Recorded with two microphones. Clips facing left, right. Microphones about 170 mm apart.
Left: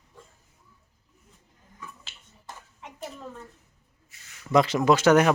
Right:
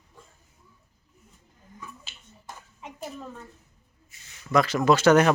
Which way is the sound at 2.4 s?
15° right (ahead or behind).